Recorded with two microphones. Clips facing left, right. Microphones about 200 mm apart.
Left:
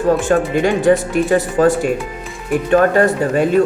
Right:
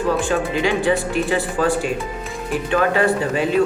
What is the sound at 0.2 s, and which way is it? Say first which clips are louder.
Speech: left 5 dB; 45° left (ahead or behind).